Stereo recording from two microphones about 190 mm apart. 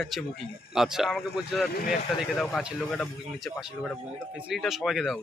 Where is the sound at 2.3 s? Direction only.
Centre (ahead or behind).